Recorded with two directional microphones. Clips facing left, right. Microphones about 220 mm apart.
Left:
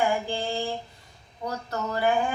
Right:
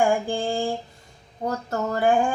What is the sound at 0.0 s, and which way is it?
Mantra, 50° right (ahead or behind).